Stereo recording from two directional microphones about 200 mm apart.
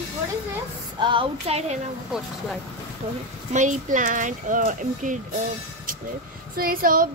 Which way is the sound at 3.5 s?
40° right (ahead or behind).